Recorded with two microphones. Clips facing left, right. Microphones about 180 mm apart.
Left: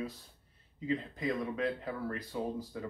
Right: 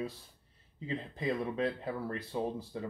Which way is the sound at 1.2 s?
30° right (ahead or behind).